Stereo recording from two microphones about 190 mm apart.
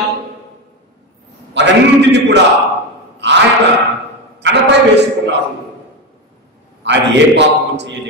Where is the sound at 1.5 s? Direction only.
65° right (ahead or behind).